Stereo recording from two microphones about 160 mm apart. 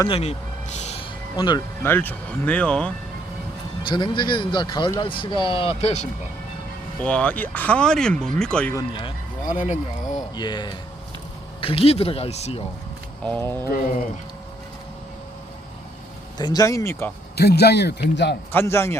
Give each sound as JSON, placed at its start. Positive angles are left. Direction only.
{"t": 0.1, "sound": "a sound", "side_deg": 40}
{"t": 1.4, "sound": "speech", "side_deg": 25}
{"t": 1.8, "sound": "speech", "side_deg": 10}
{"t": 3.8, "sound": "speech", "side_deg": 30}
{"t": 7.0, "sound": "speech", "side_deg": 5}
{"t": 8.9, "sound": "speech", "side_deg": 30}
{"t": 9.5, "sound": "speech", "side_deg": 55}
{"t": 10.3, "sound": "speech", "side_deg": 25}
{"t": 13.2, "sound": "speech", "side_deg": 10}
{"t": 16.4, "sound": "speech", "side_deg": 25}
{"t": 17.3, "sound": "a man's voice", "side_deg": 90}
{"t": 18.5, "sound": "speech", "side_deg": 15}